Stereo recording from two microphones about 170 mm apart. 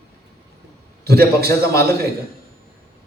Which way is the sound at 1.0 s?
65° right (ahead or behind).